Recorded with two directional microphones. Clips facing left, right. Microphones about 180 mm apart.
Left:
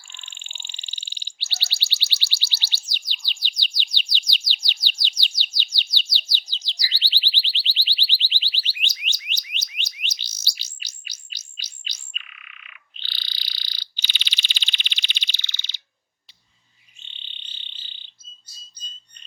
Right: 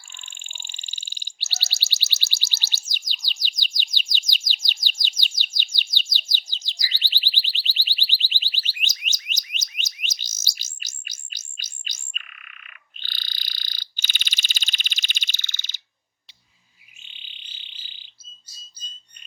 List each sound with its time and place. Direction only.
0.1 s bird: 45° right (ahead or behind)
17.0 s frog: 10° right (ahead or behind)